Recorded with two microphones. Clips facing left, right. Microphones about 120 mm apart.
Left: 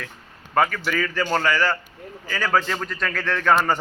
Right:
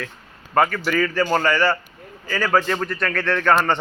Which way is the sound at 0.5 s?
5° right (ahead or behind).